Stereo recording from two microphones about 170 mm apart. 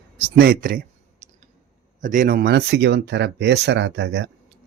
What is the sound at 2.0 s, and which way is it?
Speech, 50° right (ahead or behind).